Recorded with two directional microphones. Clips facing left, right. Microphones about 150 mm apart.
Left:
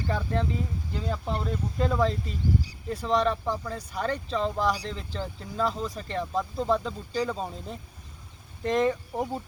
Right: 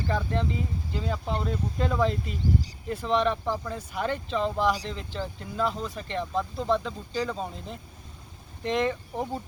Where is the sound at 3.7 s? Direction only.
5° right (ahead or behind).